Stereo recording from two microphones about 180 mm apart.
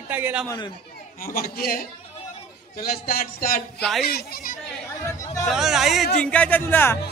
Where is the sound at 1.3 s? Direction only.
55° left (ahead or behind).